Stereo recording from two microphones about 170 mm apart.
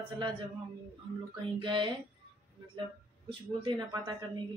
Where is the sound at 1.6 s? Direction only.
30° right (ahead or behind).